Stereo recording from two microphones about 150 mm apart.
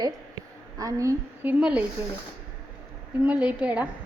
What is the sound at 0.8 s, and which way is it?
Speech, 20° right (ahead or behind).